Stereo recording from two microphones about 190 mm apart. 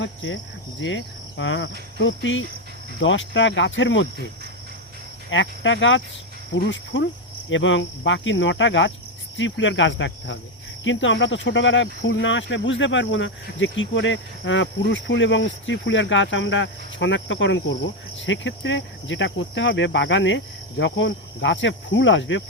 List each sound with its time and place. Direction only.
0.0 s speech: 85° left
5.3 s speech: 80° left